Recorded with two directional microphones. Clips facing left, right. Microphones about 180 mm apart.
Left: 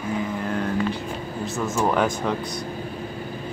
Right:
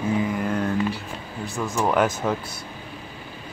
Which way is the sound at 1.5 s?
Centre (ahead or behind).